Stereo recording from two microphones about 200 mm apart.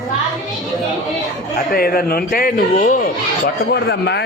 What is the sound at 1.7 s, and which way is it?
A man's voice, 50° left (ahead or behind).